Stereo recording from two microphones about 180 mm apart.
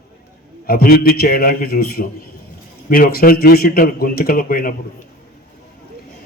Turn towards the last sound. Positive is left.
turn(degrees=55)  # may be behind; listen again after turning